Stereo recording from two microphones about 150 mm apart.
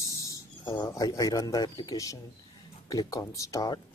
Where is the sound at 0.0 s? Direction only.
20° left (ahead or behind).